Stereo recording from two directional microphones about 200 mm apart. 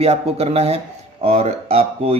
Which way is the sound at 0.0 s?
30° right (ahead or behind).